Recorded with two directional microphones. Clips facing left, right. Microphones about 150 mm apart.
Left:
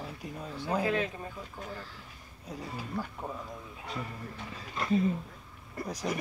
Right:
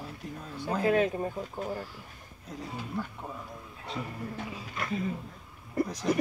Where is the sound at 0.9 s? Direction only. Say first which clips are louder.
Right 6 dB; 40° right (ahead or behind).